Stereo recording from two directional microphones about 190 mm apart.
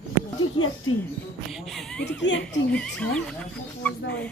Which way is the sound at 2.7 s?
5° left (ahead or behind).